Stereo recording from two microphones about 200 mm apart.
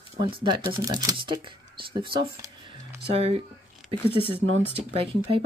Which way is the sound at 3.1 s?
30° right (ahead or behind).